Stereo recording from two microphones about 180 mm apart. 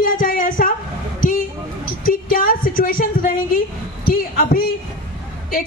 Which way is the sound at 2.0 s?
50° left (ahead or behind).